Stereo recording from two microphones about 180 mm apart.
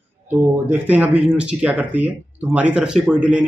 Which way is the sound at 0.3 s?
10° right (ahead or behind).